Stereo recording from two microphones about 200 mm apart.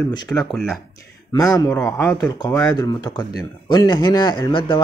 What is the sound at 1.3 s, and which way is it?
Speech, 20° left (ahead or behind).